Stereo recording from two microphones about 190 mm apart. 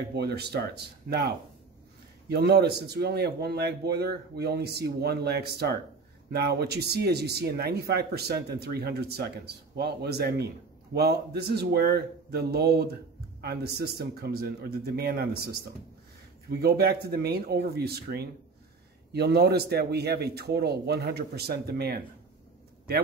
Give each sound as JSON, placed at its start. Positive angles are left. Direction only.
{"t": 0.1, "sound": "speech", "side_deg": -60}